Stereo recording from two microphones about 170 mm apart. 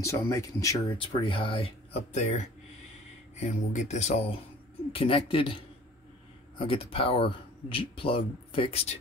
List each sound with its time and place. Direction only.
0.0 s speech: 20° left (ahead or behind)
0.9 s speech: 30° left (ahead or behind)
6.6 s speech: 35° left (ahead or behind)